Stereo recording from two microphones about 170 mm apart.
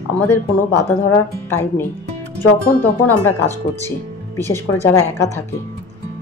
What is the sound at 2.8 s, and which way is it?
Speech, 10° left (ahead or behind).